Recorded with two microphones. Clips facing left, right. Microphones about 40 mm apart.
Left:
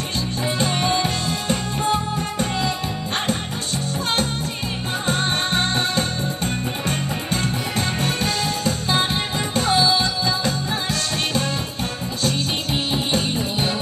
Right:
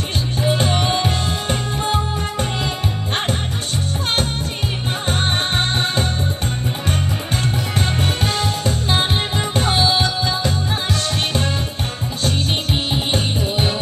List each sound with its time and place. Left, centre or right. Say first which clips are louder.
0.5 s music: right 2 dB; right
5.0 s music: right 1 dB; right
7.7 s music: right 2 dB; right
12.2 s music: right 2 dB; right